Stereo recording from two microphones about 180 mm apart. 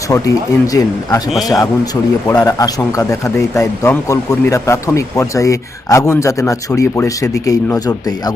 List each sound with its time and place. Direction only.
0.1 s speech: 20° left (ahead or behind)